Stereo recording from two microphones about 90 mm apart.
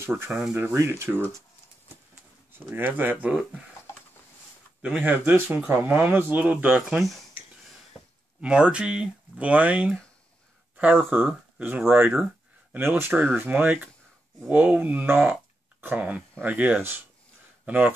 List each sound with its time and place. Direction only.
0.0 s speech: 25° right (ahead or behind)
2.5 s speech: 25° right (ahead or behind)
4.8 s speech: 15° right (ahead or behind)
7.0 s speech: centre (ahead or behind)
8.4 s speech: 10° right (ahead or behind)
11.5 s a sound: 20° right (ahead or behind)
12.7 s speech: 25° right (ahead or behind)